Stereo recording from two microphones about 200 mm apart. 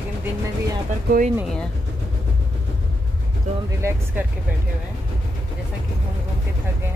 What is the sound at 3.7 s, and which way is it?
Speech, 15° right (ahead or behind).